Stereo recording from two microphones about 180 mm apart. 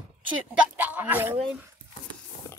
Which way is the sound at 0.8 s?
10° right (ahead or behind).